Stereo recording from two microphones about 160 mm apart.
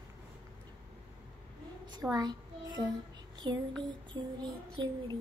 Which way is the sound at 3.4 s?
25° right (ahead or behind).